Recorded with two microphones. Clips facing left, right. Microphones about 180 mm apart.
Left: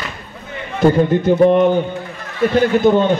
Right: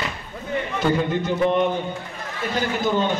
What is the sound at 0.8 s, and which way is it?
Speech, 50° left (ahead or behind).